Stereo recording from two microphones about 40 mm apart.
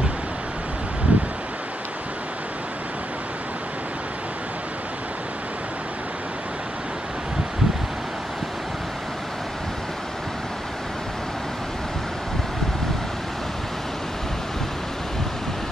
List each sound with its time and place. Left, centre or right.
1.1 s rustling leaves: right